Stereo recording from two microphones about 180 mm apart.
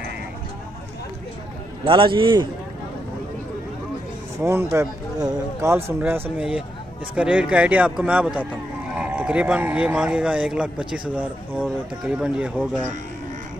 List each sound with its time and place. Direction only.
1.9 s a man's voice: 25° right (ahead or behind)
4.4 s speech: 15° right (ahead or behind)